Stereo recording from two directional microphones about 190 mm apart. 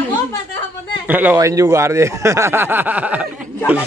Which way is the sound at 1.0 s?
10° right (ahead or behind).